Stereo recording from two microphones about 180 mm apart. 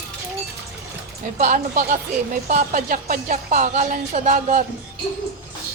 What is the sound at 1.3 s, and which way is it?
Speech, 45° right (ahead or behind).